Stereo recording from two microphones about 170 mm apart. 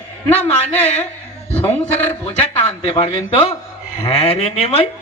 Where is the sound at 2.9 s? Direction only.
30° left (ahead or behind).